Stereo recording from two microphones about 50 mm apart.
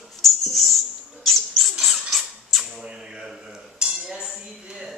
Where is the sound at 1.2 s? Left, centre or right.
Centre.